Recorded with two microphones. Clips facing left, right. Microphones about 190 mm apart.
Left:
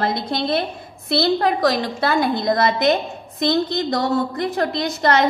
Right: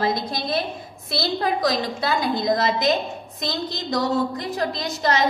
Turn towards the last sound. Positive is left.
turn(degrees=60)  # may be behind; listen again after turning